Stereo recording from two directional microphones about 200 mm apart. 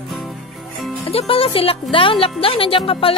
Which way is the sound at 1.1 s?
30° left (ahead or behind).